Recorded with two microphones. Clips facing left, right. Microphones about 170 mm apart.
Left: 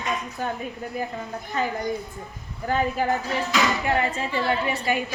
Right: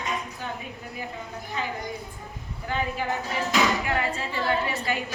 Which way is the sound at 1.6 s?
45° left (ahead or behind).